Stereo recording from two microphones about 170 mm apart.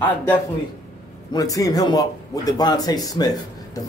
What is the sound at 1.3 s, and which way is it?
Speech, 20° left (ahead or behind).